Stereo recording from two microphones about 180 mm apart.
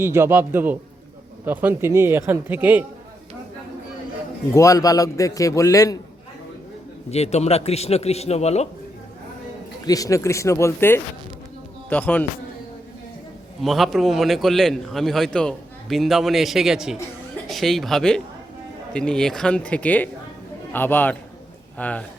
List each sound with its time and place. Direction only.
0.0 s speech: 15° right (ahead or behind)
4.5 s a man's voice: 15° left (ahead or behind)
7.1 s a man's voice: 35° left (ahead or behind)
9.8 s speech: 20° left (ahead or behind)
13.6 s a man's voice: centre (ahead or behind)